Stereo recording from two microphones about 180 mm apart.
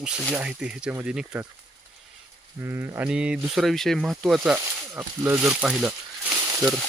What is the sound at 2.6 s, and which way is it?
Speech, 15° right (ahead or behind).